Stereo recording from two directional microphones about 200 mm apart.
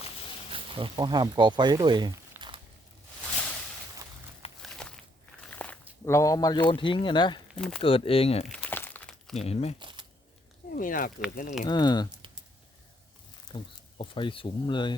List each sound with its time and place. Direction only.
0.5 s speech: 25° right (ahead or behind)
4.6 s a sound: centre (ahead or behind)
5.5 s walk: 5° left (ahead or behind)
6.1 s speech: 15° left (ahead or behind)
7.5 s speech: centre (ahead or behind)
7.8 s speech: 30° left (ahead or behind)
8.4 s crumpling: 5° left (ahead or behind)
9.3 s speech: 30° left (ahead or behind)
9.8 s a sound: 25° right (ahead or behind)
10.8 s speech: 40° left (ahead or behind)
11.6 s speech: 20° left (ahead or behind)
13.5 s speech: 20° left (ahead or behind)